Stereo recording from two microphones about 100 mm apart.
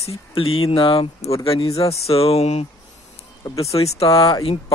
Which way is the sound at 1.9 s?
90° left.